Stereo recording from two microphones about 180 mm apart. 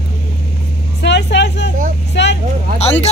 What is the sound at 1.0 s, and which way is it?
Vehicle, 75° left (ahead or behind).